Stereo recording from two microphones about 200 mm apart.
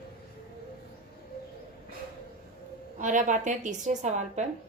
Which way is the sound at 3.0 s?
40° right (ahead or behind).